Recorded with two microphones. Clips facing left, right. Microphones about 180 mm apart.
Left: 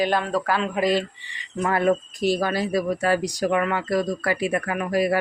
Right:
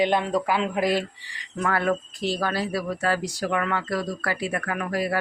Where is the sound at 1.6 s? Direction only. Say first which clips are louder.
Left 3 dB; 20° left (ahead or behind).